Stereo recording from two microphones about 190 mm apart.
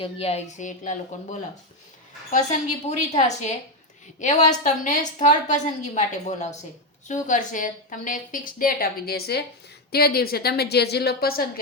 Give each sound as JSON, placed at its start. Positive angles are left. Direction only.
{"t": 0.0, "sound": "speech", "side_deg": 30}
{"t": 2.8, "sound": "a woman's voice", "side_deg": 35}